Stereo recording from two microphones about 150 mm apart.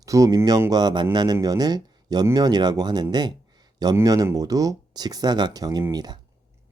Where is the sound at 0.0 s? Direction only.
20° right (ahead or behind).